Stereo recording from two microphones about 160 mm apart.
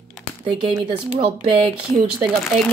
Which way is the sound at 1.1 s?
35° right (ahead or behind).